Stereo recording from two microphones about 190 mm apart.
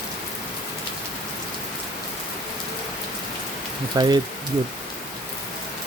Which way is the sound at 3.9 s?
20° right (ahead or behind).